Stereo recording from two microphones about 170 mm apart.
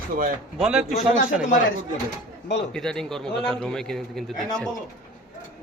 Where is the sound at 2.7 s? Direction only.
5° left (ahead or behind).